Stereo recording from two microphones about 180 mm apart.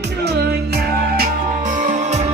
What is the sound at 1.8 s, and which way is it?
Music, 40° right (ahead or behind).